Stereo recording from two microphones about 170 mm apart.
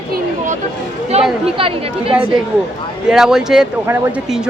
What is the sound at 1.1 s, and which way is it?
Speech, 35° right (ahead or behind).